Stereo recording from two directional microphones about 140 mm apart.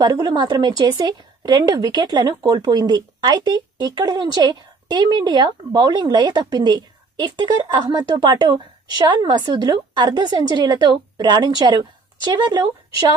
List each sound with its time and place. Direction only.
0.0 s a woman's voice: 30° right (ahead or behind)